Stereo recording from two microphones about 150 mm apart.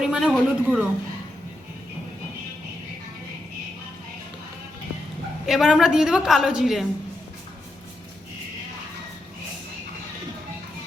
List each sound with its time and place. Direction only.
0.0 s a man's voice: 5° right (ahead or behind)
5.5 s a woman's voice: 5° right (ahead or behind)